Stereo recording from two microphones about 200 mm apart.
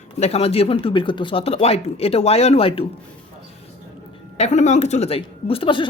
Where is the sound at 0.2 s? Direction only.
30° left (ahead or behind).